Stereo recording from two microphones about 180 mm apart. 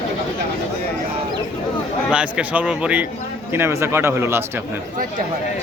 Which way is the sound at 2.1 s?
5° right (ahead or behind).